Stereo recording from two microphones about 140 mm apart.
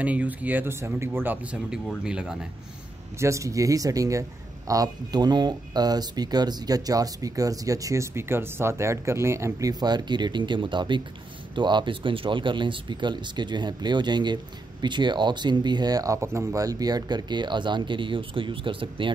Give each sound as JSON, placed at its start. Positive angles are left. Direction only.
{"t": 0.0, "sound": "speech", "side_deg": -10}
{"t": 3.2, "sound": "speech", "side_deg": -20}